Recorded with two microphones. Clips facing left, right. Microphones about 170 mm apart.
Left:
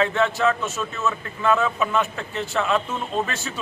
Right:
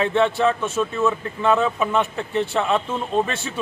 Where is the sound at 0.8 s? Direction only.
15° right (ahead or behind).